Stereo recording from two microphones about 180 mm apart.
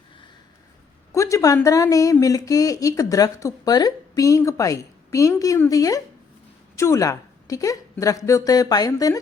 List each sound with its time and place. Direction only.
1.1 s speech: 15° left (ahead or behind)